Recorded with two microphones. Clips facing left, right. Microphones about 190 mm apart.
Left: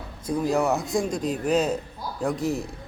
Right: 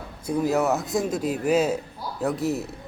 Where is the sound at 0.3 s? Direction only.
5° right (ahead or behind).